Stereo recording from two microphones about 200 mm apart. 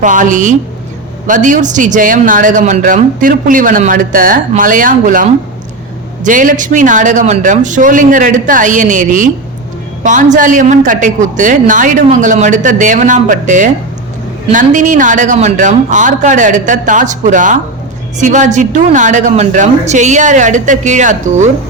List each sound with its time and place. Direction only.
0.0 s speech: 40° right (ahead or behind)